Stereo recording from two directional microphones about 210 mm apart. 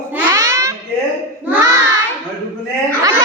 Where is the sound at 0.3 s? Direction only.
15° right (ahead or behind).